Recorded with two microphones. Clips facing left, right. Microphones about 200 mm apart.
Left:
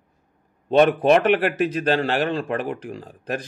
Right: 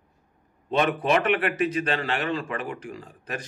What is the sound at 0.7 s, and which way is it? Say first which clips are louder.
Speech: left 7 dB; 40° left (ahead or behind).